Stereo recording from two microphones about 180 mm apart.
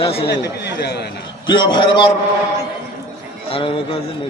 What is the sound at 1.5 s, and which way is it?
Speech, 25° left (ahead or behind).